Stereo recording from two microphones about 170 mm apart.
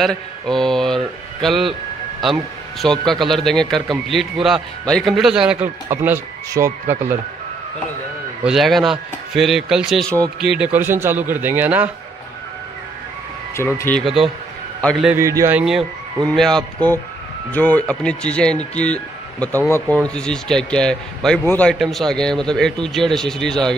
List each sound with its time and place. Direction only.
0.0 s speech: 5° left (ahead or behind)
2.8 s speech: centre (ahead or behind)
5.9 s a man's voice: 15° right (ahead or behind)
8.5 s a man's voice: centre (ahead or behind)
13.7 s a man's voice: 10° left (ahead or behind)
15.0 s a man's voice: 15° right (ahead or behind)
15.6 s speech: centre (ahead or behind)